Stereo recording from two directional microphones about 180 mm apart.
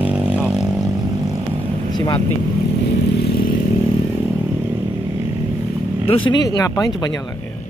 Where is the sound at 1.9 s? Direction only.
20° left (ahead or behind).